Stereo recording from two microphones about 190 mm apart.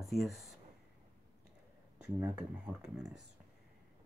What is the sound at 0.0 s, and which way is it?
Speech, centre (ahead or behind).